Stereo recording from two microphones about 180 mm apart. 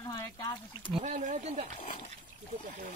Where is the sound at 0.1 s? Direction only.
20° left (ahead or behind).